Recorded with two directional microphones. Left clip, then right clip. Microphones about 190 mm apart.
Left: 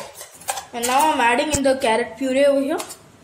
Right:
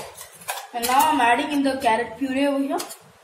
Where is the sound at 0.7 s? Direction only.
60° left (ahead or behind).